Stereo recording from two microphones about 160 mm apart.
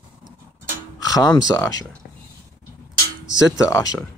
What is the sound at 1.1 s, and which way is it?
Speech, 20° left (ahead or behind).